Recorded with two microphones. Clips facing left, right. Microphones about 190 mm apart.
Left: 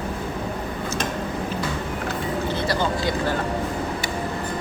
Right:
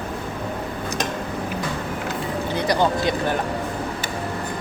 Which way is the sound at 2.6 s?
20° right (ahead or behind).